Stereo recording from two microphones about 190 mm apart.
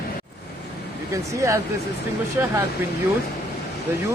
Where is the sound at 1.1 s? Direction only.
15° right (ahead or behind).